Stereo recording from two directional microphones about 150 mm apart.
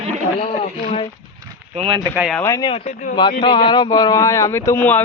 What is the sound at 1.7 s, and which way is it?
Speech, 40° right (ahead or behind).